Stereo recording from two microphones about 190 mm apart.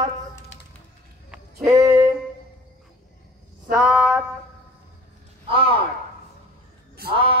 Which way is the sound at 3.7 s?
5° right (ahead or behind).